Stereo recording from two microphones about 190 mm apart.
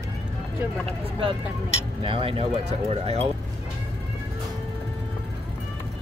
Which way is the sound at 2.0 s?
30° right (ahead or behind).